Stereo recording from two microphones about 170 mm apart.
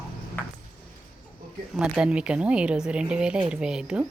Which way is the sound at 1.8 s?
5° right (ahead or behind).